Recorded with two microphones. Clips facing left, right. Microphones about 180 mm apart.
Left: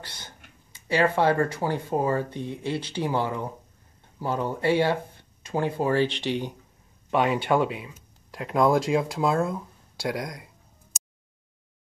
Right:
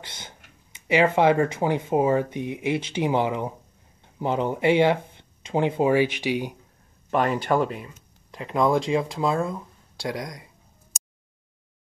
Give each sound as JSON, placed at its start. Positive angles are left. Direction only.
{"t": 0.8, "sound": "speech", "side_deg": -20}
{"t": 7.1, "sound": "speech", "side_deg": 0}